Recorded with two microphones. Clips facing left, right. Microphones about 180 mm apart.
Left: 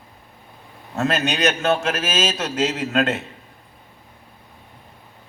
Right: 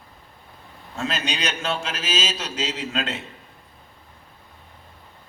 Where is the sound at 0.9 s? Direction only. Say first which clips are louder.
Left 6 dB; 50° left (ahead or behind).